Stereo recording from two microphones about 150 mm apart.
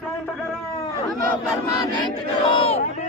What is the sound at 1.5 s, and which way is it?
Chant, 25° left (ahead or behind).